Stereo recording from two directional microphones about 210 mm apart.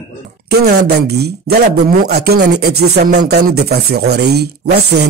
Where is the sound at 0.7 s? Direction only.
50° right (ahead or behind).